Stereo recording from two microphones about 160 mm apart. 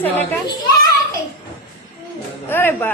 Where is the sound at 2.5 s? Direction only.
15° left (ahead or behind).